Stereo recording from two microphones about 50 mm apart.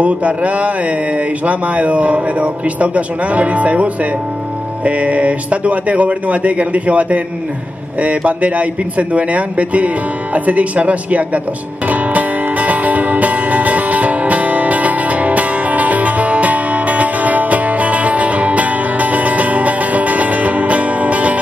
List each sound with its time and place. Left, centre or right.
0.0 s speech: right
11.9 s music: right